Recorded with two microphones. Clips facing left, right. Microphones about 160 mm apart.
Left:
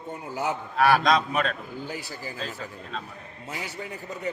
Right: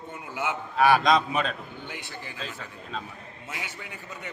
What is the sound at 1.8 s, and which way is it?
A man's voice, 40° left (ahead or behind).